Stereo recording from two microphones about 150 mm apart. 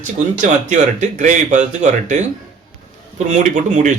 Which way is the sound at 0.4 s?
55° right (ahead or behind).